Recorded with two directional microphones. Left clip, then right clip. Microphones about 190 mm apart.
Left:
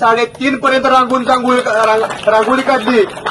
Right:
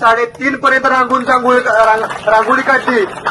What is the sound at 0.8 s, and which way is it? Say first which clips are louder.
Speech: left 1 dB; 30° left (ahead or behind).